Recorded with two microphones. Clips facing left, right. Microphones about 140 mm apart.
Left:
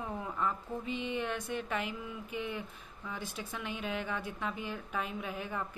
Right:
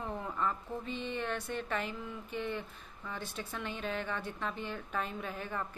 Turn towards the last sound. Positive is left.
turn(degrees=10)  # may be behind; listen again after turning